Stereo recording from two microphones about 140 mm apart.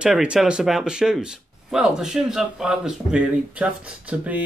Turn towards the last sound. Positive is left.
turn(degrees=-10)  # may be behind; listen again after turning